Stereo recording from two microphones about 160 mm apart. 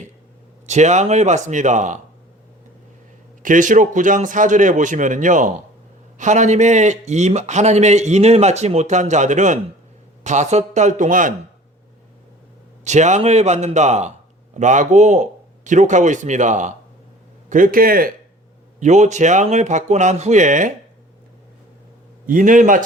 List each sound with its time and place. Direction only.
0.7 s a man's voice: 45° right (ahead or behind)
3.4 s a man's voice: 55° right (ahead or behind)
12.8 s a man's voice: 50° right (ahead or behind); by 18.1 s 65° right (ahead or behind)
18.8 s a man's voice: 45° right (ahead or behind)
22.3 s speech: 55° right (ahead or behind)